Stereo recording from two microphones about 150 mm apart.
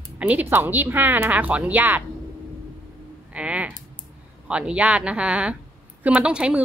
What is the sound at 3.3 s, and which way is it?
A woman's voice, 10° right (ahead or behind).